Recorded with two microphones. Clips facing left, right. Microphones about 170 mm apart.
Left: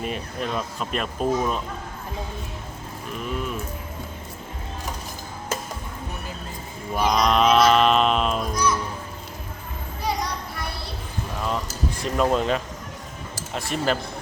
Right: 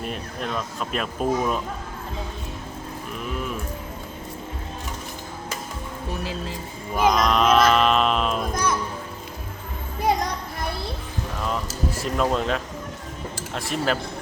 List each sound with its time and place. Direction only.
0.0 s speech: centre (ahead or behind)
3.2 s sheep: centre (ahead or behind)
6.9 s music: centre (ahead or behind)
10.0 s music: 50° right (ahead or behind)
11.4 s a sound: centre (ahead or behind)
13.5 s speech: centre (ahead or behind)